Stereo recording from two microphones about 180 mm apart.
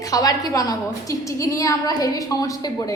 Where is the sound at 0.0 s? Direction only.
20° left (ahead or behind).